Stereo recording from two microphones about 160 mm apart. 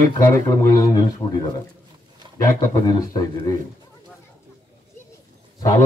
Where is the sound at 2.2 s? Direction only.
30° right (ahead or behind).